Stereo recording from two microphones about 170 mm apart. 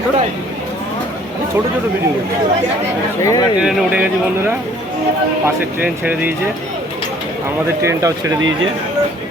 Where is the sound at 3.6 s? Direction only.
5° right (ahead or behind).